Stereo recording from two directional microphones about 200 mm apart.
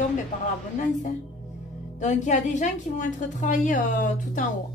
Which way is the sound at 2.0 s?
35° left (ahead or behind).